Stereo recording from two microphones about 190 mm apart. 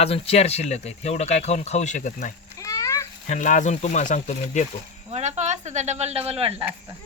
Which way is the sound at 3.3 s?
40° left (ahead or behind).